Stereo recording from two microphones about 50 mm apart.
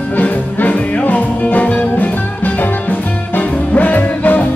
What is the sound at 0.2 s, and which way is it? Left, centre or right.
Music, left.